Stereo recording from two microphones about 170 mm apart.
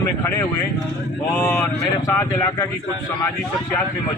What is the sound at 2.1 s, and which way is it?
Speech, 15° left (ahead or behind).